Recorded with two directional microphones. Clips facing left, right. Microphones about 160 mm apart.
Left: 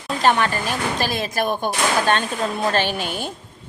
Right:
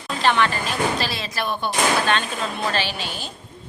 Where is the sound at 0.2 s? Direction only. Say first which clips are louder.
Left 1 dB; 45° left (ahead or behind).